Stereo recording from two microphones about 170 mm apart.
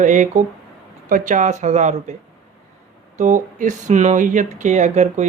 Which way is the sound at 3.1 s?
45° right (ahead or behind).